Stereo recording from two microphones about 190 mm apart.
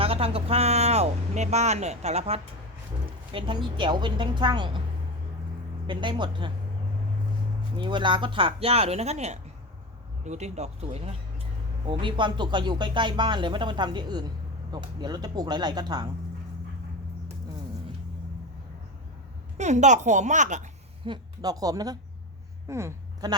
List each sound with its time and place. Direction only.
0.0 s speech: 30° right (ahead or behind)
5.9 s speech: 25° right (ahead or behind)
7.8 s speech: 25° right (ahead or behind)
19.5 s speech: 35° right (ahead or behind)
21.0 s a woman's voice: 25° right (ahead or behind)
22.6 s a sound: 15° right (ahead or behind)